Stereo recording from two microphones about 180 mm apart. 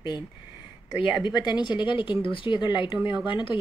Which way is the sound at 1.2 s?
25° left (ahead or behind).